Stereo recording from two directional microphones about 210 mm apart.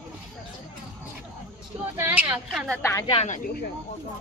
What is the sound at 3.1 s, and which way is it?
Speech, 35° left (ahead or behind).